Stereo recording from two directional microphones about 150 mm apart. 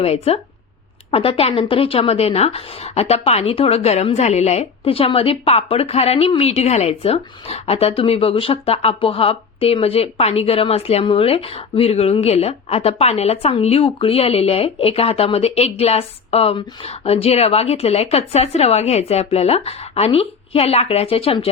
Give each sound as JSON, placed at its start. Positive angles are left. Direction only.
{"t": 0.0, "sound": "a woman's voice", "side_deg": 45}